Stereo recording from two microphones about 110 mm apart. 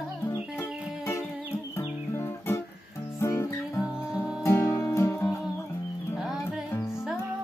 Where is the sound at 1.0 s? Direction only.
25° left (ahead or behind).